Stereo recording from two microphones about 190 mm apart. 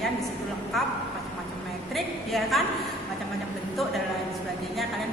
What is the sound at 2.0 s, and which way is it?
Speech, centre (ahead or behind).